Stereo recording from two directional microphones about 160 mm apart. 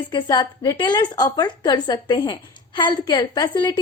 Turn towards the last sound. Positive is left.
turn(degrees=25)  # may be behind; listen again after turning